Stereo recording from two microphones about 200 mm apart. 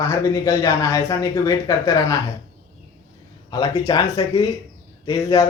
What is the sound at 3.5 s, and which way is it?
A man's voice, 20° left (ahead or behind).